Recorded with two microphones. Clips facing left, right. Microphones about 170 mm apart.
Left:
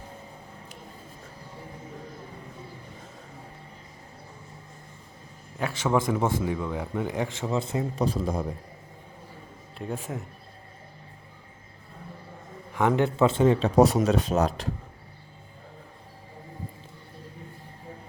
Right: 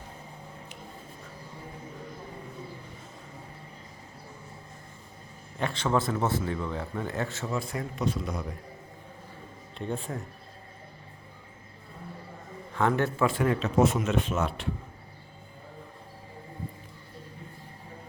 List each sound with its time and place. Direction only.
5.5 s a man's voice: 10° left (ahead or behind); by 8.5 s 30° left (ahead or behind)
9.7 s speech: 5° left (ahead or behind)
12.7 s a man's voice: 15° left (ahead or behind); by 14.7 s 40° left (ahead or behind)